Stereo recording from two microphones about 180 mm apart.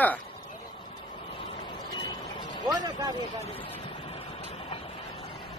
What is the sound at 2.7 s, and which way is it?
Vehicle, 20° right (ahead or behind).